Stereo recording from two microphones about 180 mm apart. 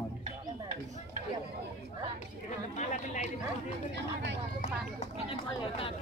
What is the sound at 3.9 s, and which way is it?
Speech, 75° right (ahead or behind).